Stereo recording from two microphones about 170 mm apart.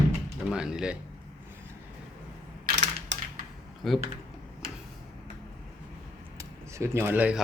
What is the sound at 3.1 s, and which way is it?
Typewriter, 90° right.